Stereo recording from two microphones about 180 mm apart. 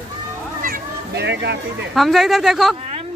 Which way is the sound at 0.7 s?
70° right (ahead or behind).